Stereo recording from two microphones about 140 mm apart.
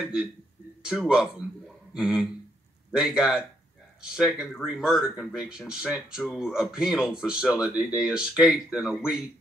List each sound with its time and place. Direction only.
0.0 s speech: 5° right (ahead or behind)